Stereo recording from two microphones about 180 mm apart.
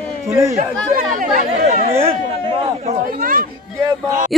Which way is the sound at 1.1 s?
45° right (ahead or behind).